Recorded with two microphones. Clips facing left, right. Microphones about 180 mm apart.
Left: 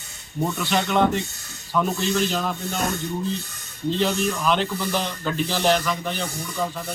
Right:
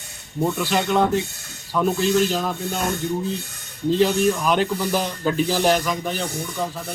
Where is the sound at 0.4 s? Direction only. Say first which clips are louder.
Right 2 dB; 10° right (ahead or behind).